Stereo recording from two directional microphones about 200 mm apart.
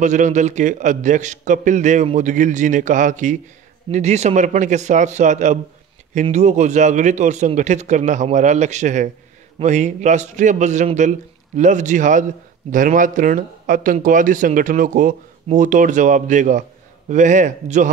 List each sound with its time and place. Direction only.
0.0 s a man's voice: 35° right (ahead or behind)